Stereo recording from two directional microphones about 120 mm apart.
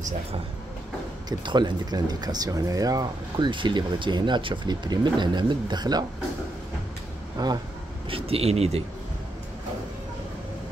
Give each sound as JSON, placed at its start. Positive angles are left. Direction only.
{"t": 1.4, "sound": "speech", "side_deg": -40}
{"t": 7.4, "sound": "speech", "side_deg": -35}
{"t": 8.1, "sound": "speech", "side_deg": -55}